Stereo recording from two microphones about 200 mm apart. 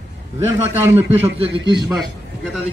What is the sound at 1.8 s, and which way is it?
Speech, 5° right (ahead or behind).